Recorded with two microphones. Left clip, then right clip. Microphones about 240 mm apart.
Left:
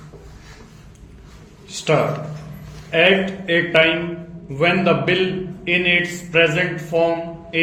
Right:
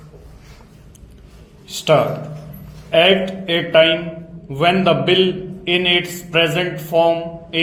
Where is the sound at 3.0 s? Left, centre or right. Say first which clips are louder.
Right 2 dB; right.